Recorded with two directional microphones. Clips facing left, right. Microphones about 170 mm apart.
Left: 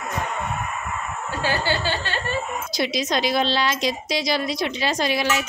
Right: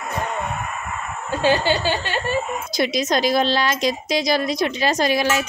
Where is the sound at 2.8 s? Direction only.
50° right (ahead or behind).